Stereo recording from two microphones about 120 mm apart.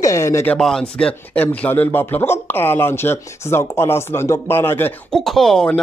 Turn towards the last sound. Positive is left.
turn(degrees=5)  # may be behind; listen again after turning